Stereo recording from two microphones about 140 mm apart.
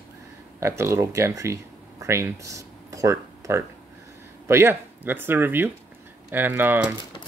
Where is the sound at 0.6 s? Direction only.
20° right (ahead or behind).